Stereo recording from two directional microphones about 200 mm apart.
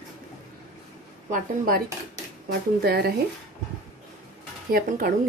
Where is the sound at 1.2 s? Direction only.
40° right (ahead or behind).